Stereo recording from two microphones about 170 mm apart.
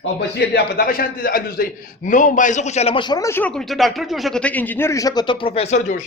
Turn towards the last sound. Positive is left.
turn(degrees=45)  # may be behind; listen again after turning